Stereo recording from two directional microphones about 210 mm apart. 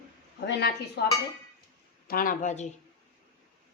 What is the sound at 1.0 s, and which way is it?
Speech, 50° left (ahead or behind).